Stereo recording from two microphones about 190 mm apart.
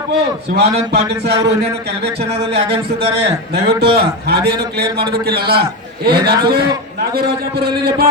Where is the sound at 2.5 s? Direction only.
30° right (ahead or behind).